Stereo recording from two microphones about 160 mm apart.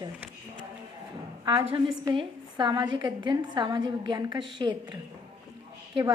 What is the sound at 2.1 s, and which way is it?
A woman's voice, 30° right (ahead or behind).